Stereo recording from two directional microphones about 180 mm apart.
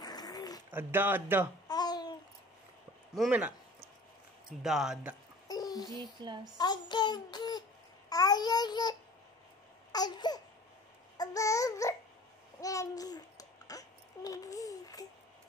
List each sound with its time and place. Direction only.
0.0 s a sound: 20° left (ahead or behind)
0.7 s speech: 10° right (ahead or behind)
1.7 s babbling: 25° left (ahead or behind)
3.2 s speech: 5° right (ahead or behind)
4.6 s speech: centre (ahead or behind)
5.5 s a sound: 20° left (ahead or behind)
6.2 s a woman's voice: 25° right (ahead or behind)
6.6 s child singing: 25° left (ahead or behind)
8.1 s babbling: 20° left (ahead or behind)
9.9 s babbling: 25° left (ahead or behind)